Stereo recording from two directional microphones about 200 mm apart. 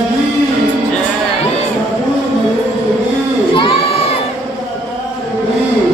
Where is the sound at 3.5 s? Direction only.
25° left (ahead or behind).